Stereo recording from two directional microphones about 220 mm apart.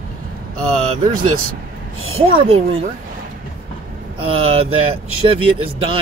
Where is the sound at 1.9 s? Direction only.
70° right (ahead or behind).